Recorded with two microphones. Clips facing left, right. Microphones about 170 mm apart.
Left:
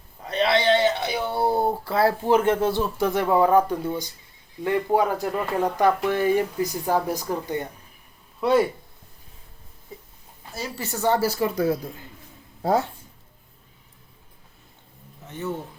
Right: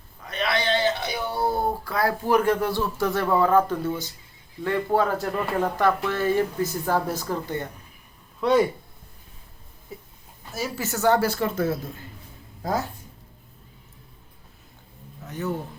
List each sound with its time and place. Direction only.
0.2 s a sound: 30° left (ahead or behind); by 4.1 s 15° left (ahead or behind)
4.6 s speech: 15° left (ahead or behind)
8.4 s speech: 5° left (ahead or behind)
10.5 s speech: centre (ahead or behind)
15.3 s speech: centre (ahead or behind)